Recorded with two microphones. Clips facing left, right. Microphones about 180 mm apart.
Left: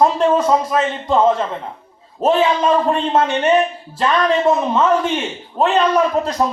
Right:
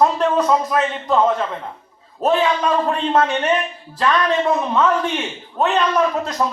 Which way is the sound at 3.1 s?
25° left (ahead or behind).